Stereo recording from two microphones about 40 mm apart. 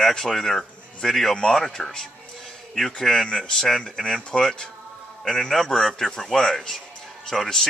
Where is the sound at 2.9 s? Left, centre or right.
Centre.